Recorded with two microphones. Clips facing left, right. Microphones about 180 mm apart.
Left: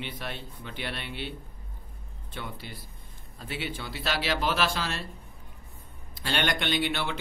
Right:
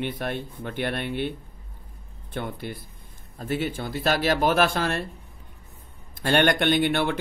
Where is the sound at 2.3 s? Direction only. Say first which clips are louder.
Right 8 dB; 55° right (ahead or behind).